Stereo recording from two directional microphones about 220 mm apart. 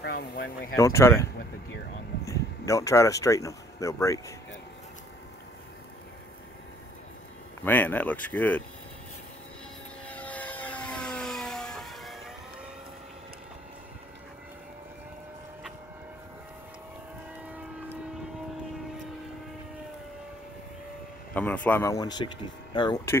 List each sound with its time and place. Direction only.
0.0 s speech: 50° left (ahead or behind)
0.7 s speech: 15° left (ahead or behind)
7.6 s speech: 10° left (ahead or behind)
10.0 s vehicle: 5° left (ahead or behind)
21.4 s speech: 5° left (ahead or behind)